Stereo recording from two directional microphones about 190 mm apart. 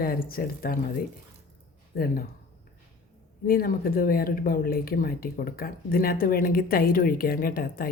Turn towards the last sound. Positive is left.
turn(degrees=50)  # may be behind; listen again after turning